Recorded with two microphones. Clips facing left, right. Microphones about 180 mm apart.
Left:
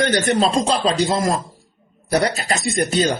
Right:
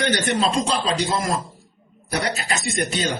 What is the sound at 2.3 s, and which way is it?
Speech, 40° left (ahead or behind).